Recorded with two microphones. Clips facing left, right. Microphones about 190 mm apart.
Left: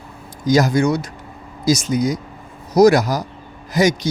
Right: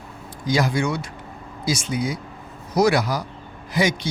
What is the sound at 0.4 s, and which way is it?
Speech, 40° left (ahead or behind).